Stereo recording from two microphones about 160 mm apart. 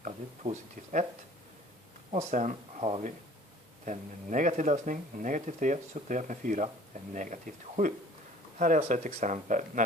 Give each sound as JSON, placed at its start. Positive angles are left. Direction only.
{"t": 0.0, "sound": "speech", "side_deg": -45}
{"t": 2.1, "sound": "speech", "side_deg": -50}